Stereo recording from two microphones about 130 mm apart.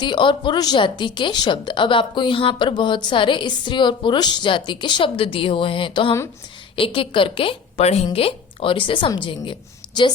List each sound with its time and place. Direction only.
0.0 s a woman's voice: 40° left (ahead or behind)